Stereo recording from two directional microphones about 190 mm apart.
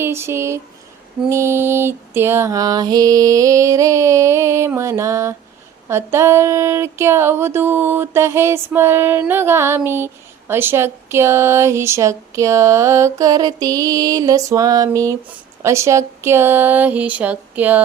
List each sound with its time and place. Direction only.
0.0 s speech: 15° right (ahead or behind)